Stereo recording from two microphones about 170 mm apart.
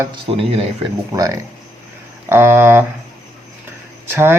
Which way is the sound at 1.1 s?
20° right (ahead or behind).